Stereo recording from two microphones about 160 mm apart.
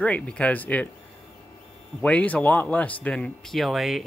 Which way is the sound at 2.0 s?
10° left (ahead or behind).